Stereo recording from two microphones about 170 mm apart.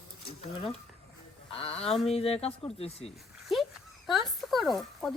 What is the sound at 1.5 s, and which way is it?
Speech, 35° left (ahead or behind).